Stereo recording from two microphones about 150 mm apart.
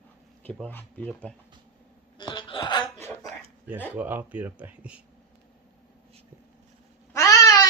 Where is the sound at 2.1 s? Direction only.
30° left (ahead or behind).